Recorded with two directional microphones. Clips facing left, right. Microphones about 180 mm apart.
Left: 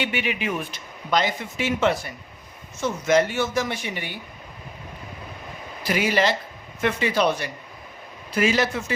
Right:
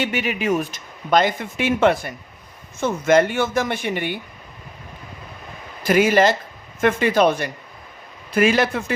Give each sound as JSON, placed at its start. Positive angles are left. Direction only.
{"t": 0.0, "sound": "speech", "side_deg": -45}
{"t": 5.8, "sound": "speech", "side_deg": -50}